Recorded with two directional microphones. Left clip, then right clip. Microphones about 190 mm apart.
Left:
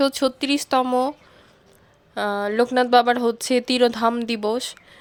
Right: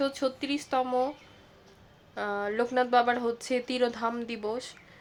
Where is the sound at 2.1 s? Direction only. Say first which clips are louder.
Left 9 dB; 50° left (ahead or behind).